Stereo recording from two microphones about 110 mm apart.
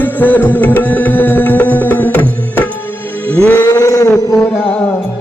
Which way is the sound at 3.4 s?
20° left (ahead or behind).